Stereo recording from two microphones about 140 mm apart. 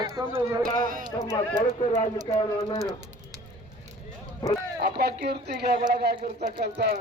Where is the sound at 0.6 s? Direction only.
85° right.